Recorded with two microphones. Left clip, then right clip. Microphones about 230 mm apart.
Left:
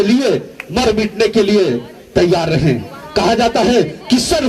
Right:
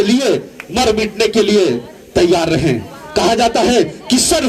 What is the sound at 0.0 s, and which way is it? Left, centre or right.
Music, right.